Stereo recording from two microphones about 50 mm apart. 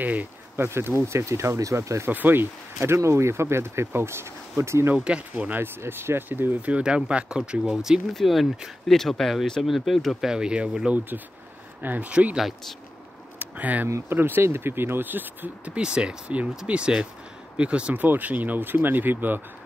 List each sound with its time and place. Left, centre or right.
0.0 s speech: right
0.7 s speech: right
2.0 s speech: right
2.8 s speech: right
4.9 s speech: right
5.6 s speech: right
6.7 s speech: right
8.1 s speech: centre
10.2 s speech: centre
11.8 s speech: right
13.4 s a sound: right
14.0 s speech: right
15.7 s speech: centre
17.9 s speech: right